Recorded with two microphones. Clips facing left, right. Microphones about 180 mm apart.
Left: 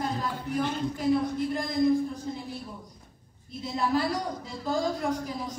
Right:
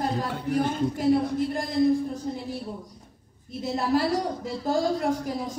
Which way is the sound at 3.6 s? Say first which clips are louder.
Right 3 dB; 45° right (ahead or behind).